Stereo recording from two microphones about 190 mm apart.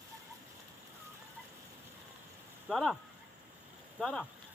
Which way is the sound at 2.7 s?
Centre (ahead or behind).